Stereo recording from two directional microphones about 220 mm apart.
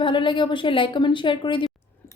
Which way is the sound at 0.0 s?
20° left (ahead or behind).